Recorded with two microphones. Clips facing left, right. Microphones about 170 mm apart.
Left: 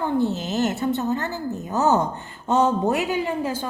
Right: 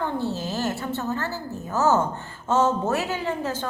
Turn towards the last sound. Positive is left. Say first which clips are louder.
# left 3 dB
turn(degrees=10)  # may be behind; listen again after turning